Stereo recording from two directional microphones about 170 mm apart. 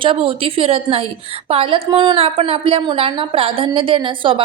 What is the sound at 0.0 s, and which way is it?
A woman's voice, 30° right (ahead or behind).